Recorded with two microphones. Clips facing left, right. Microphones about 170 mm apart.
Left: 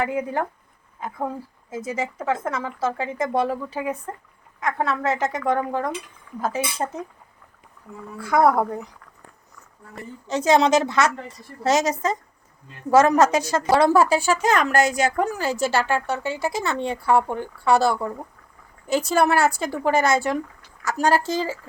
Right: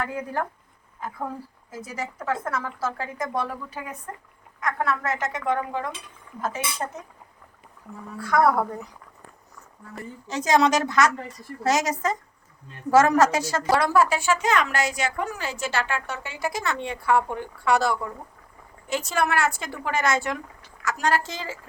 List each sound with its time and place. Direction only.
0.1 s a woman's voice: 20° left (ahead or behind)
1.7 s a woman's voice: 25° left (ahead or behind)
5.5 s a woman's voice: 40° left (ahead or behind)
6.4 s a woman's voice: 30° left (ahead or behind)
8.2 s a woman's voice: 25° left (ahead or behind)
10.2 s a woman's voice: 25° left (ahead or behind)